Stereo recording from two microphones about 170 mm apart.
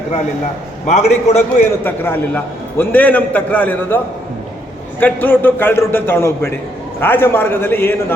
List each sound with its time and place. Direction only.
0.9 s a man's voice: 40° left (ahead or behind)
1.8 s a man's voice: 10° left (ahead or behind)